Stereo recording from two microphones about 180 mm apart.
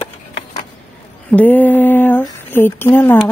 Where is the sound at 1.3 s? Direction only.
10° left (ahead or behind).